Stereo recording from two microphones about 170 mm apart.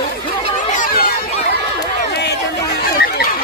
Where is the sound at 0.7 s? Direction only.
60° left (ahead or behind).